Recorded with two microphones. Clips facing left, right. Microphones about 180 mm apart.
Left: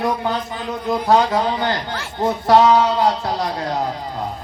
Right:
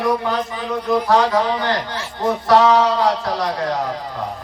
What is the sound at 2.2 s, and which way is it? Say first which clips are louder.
Speech: left 1 dB; 25° left (ahead or behind).